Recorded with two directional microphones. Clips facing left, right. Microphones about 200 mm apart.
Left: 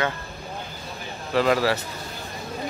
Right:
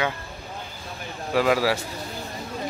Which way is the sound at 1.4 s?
10° right (ahead or behind).